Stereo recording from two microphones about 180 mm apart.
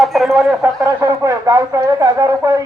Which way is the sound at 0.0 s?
Centre (ahead or behind).